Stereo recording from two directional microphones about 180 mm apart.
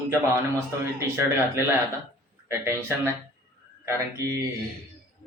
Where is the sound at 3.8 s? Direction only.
15° right (ahead or behind).